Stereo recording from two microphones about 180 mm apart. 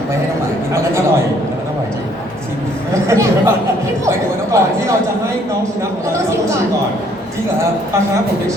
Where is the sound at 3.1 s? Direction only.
15° right (ahead or behind).